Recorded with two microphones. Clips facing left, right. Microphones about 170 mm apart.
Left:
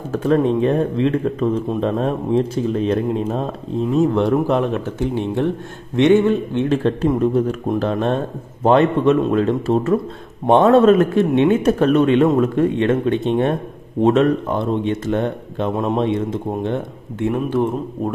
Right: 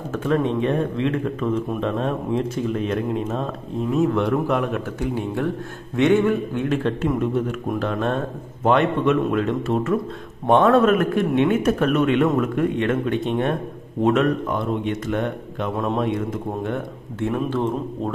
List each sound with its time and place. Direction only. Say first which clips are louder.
0.1 s speech: left 5 dB; 35° left (ahead or behind)
17.3 s speech: left 4 dB; 15° left (ahead or behind)